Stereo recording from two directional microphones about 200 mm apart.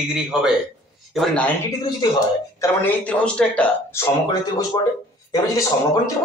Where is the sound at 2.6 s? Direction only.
10° left (ahead or behind).